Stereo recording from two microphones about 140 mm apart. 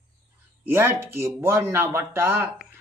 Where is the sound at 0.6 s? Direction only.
15° right (ahead or behind).